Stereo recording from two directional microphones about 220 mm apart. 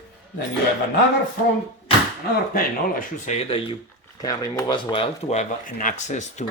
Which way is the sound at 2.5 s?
40° left (ahead or behind).